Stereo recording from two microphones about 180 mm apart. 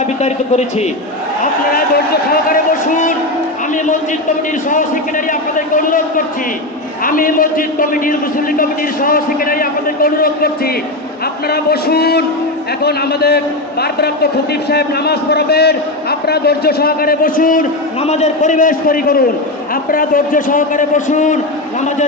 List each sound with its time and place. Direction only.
0.0 s speech: 40° left (ahead or behind)
2.3 s a sound: 50° left (ahead or behind)
4.7 s a man's voice: 45° left (ahead or behind)
18.0 s a man's voice: 40° left (ahead or behind)